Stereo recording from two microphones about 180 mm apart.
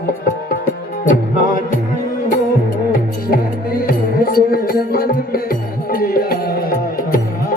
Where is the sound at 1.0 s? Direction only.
45° left (ahead or behind).